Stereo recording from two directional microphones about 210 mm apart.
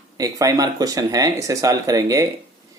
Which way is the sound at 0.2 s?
15° right (ahead or behind).